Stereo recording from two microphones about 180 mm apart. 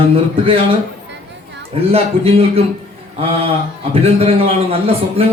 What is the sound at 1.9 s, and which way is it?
Speech, 30° right (ahead or behind).